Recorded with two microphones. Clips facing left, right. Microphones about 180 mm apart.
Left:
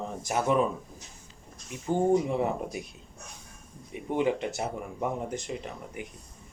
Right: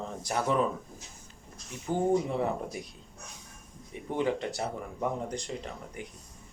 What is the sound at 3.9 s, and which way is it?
Speech, 15° left (ahead or behind).